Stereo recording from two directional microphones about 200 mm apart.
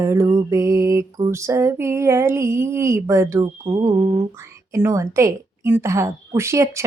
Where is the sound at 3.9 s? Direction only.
30° right (ahead or behind).